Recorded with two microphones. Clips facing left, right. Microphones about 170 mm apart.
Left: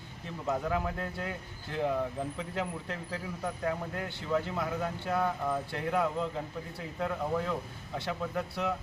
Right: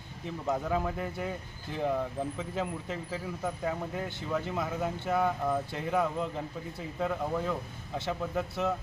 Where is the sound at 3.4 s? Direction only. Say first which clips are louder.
Even; 5° right (ahead or behind).